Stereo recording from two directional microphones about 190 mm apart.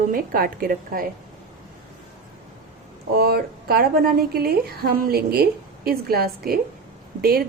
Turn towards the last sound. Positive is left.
turn(degrees=-50)  # may be behind; listen again after turning